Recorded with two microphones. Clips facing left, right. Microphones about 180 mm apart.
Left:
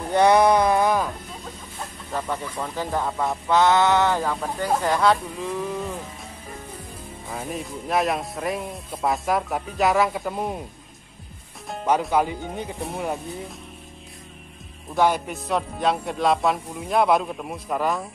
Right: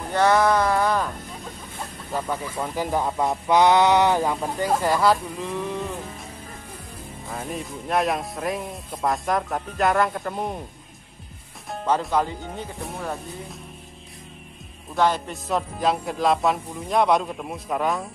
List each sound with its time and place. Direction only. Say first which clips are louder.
0.1 s speech: left 2 dB; 15° left (ahead or behind)
2.1 s speech: right 1 dB; centre (ahead or behind)
2.6 s speech: right 3 dB; 15° right (ahead or behind)
7.2 s speech: even; centre (ahead or behind)
12.0 s speech: left 2 dB; 10° left (ahead or behind)
15.0 s speech: left 1 dB; 10° left (ahead or behind)
15.3 s speech: even; centre (ahead or behind)